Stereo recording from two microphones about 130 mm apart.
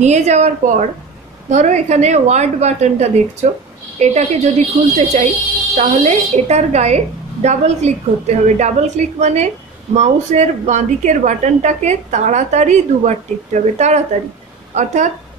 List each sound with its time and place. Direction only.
0.0 s a woman's voice: 60° right (ahead or behind)